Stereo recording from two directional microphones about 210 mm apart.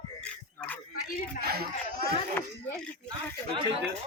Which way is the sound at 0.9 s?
40° left (ahead or behind).